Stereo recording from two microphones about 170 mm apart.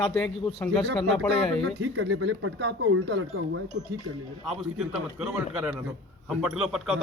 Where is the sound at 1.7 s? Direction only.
90° right.